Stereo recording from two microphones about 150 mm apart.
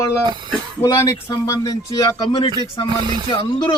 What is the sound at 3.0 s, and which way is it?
Speech, 30° right (ahead or behind).